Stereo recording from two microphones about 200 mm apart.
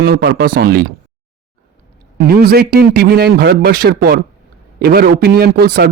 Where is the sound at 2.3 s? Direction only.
50° right (ahead or behind).